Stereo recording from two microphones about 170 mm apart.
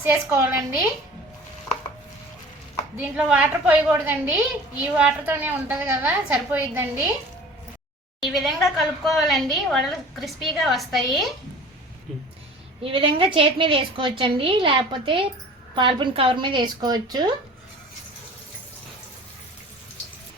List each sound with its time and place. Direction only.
0.0 s a woman's voice: 15° right (ahead or behind)
3.0 s a woman's voice: 10° right (ahead or behind)
8.2 s a woman's voice: centre (ahead or behind)
12.8 s a woman's voice: 35° right (ahead or behind)